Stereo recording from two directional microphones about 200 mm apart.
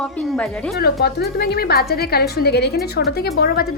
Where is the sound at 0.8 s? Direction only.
55° left (ahead or behind).